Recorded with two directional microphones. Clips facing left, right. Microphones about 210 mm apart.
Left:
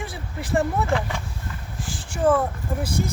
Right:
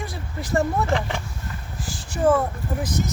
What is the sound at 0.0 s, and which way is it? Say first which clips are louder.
Vehicle: even; centre (ahead or behind).